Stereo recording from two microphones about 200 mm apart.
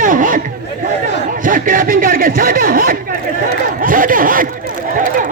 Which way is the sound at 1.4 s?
45° right (ahead or behind).